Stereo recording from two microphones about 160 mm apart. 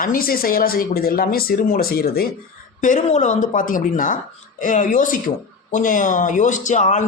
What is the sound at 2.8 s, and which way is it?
A man's voice, 50° left (ahead or behind).